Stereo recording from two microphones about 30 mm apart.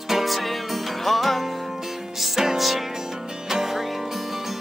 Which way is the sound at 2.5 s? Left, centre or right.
Centre.